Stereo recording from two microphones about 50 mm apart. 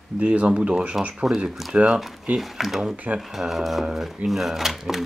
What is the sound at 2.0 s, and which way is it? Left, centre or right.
Speech, centre.